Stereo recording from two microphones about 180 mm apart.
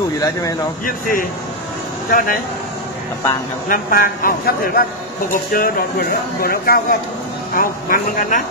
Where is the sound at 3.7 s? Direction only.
50° left (ahead or behind).